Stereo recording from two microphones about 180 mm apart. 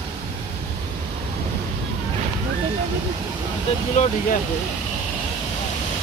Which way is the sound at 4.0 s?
40° left (ahead or behind).